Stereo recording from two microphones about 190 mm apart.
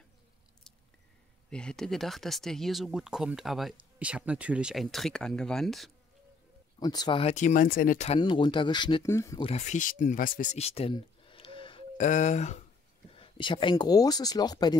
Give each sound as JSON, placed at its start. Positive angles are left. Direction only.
{"t": 1.5, "sound": "speech", "side_deg": 5}
{"t": 6.8, "sound": "speech", "side_deg": 20}
{"t": 8.2, "sound": "speech", "side_deg": 25}
{"t": 9.5, "sound": "speech", "side_deg": 35}
{"t": 12.0, "sound": "speech", "side_deg": 40}
{"t": 13.1, "sound": "speech", "side_deg": 25}